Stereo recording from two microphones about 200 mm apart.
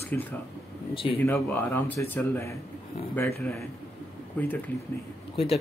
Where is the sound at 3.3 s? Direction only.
Centre (ahead or behind).